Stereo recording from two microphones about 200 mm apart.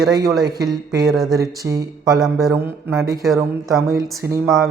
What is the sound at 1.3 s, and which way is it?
Speech, 15° right (ahead or behind).